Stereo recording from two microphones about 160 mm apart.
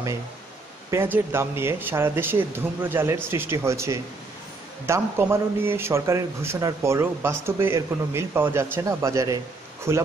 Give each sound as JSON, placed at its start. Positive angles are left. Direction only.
{"t": 0.8, "sound": "a man's voice", "side_deg": -15}